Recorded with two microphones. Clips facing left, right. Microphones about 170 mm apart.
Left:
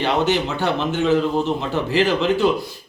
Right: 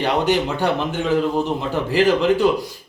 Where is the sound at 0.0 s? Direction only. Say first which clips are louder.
Right 1 dB; 10° right (ahead or behind).